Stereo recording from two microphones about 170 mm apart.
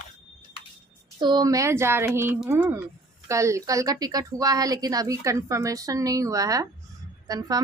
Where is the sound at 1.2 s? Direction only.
25° right (ahead or behind).